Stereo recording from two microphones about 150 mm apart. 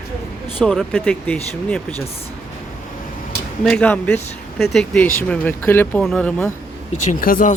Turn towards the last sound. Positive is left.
turn(degrees=70)  # may be behind; listen again after turning